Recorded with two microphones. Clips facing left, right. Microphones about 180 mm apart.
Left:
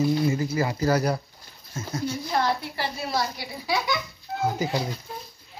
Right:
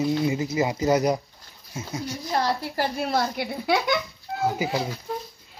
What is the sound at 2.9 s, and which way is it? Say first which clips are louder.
A woman's voice: right 2 dB; 55° right (ahead or behind).